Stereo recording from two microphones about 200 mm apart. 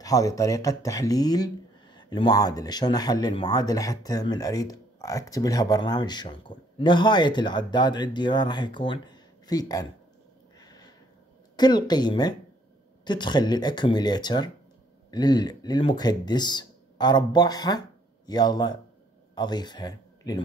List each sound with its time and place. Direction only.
0.0 s speech: 15° left (ahead or behind)
10.6 s a sound: 20° left (ahead or behind)
11.5 s speech: 20° left (ahead or behind)